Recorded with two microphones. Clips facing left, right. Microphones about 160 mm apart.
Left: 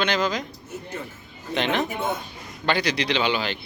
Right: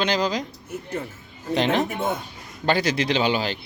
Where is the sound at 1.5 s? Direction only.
35° right (ahead or behind).